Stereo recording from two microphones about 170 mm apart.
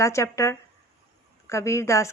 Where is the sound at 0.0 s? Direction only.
15° left (ahead or behind).